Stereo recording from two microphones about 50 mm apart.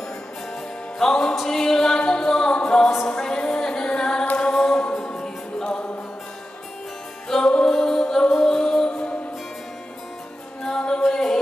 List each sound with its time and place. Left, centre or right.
0.5 s music: centre
3.2 s singing: centre
4.4 s music: centre
7.2 s music: centre
10.6 s music: centre